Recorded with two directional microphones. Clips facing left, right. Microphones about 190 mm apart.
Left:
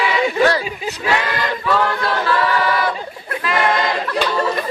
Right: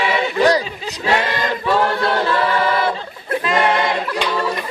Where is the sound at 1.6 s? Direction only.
25° right (ahead or behind).